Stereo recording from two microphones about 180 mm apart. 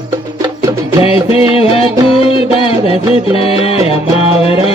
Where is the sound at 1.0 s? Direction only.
30° left (ahead or behind).